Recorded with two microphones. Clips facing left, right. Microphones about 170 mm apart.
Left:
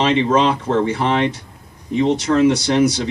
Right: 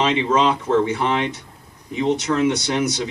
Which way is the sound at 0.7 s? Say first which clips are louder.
Left 2 dB; 30° left (ahead or behind).